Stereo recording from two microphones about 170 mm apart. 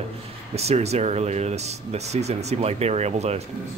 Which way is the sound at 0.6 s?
40° right (ahead or behind).